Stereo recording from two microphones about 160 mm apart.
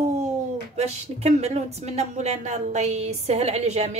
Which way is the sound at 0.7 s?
45° right (ahead or behind).